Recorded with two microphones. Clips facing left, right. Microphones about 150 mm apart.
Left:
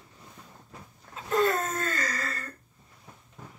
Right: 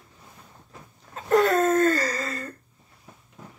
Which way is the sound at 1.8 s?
40° right (ahead or behind).